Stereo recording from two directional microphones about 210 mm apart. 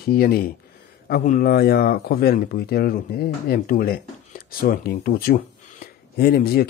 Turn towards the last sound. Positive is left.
turn(degrees=45)  # may be behind; listen again after turning